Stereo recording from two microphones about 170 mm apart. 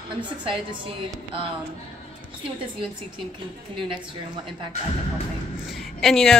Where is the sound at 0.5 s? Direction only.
30° right (ahead or behind).